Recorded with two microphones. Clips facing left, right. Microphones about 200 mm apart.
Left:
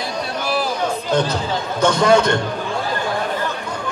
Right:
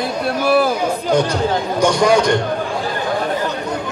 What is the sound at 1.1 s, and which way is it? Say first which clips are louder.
Speech: right 4 dB; 15° right (ahead or behind).